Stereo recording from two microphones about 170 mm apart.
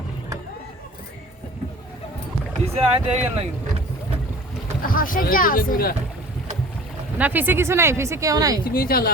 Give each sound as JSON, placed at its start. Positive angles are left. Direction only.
{"t": 2.7, "sound": "speech", "side_deg": -35}
{"t": 4.8, "sound": "speech", "side_deg": 55}
{"t": 7.2, "sound": "speech", "side_deg": -10}
{"t": 8.6, "sound": "speech", "side_deg": 60}